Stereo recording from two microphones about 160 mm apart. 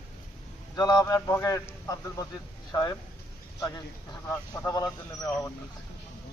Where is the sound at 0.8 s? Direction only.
25° left (ahead or behind).